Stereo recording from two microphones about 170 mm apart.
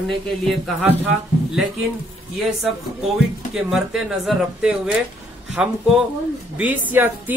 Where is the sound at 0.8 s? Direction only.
10° right (ahead or behind).